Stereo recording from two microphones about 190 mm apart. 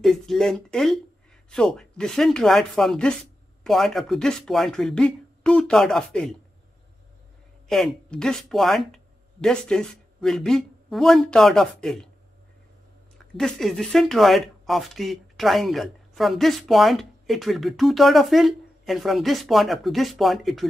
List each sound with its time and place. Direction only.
0.0 s speech: centre (ahead or behind)
7.6 s speech: centre (ahead or behind)
13.4 s speech: centre (ahead or behind)